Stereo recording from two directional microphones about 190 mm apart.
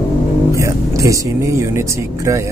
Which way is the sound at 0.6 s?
15° right (ahead or behind).